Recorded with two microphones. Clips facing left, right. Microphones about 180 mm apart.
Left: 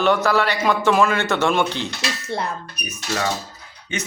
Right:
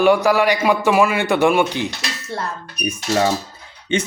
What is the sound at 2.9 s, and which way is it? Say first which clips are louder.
Speech: right 6 dB; 30° right (ahead or behind).